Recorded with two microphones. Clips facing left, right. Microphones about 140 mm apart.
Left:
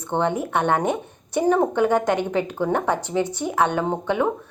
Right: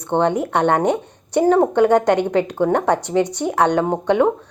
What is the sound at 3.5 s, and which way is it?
Speech, 70° right (ahead or behind).